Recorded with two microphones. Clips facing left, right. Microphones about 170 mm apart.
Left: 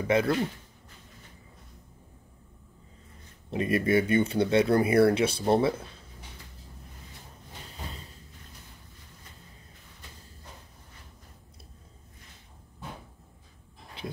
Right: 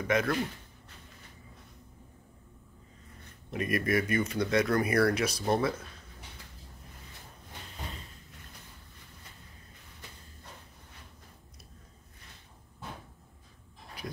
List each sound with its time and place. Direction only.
0.0 s speech: 30° left (ahead or behind)
3.4 s speech: 30° left (ahead or behind)
14.0 s dog: 25° left (ahead or behind)